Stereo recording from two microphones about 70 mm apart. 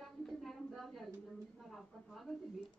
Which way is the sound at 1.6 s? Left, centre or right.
Centre.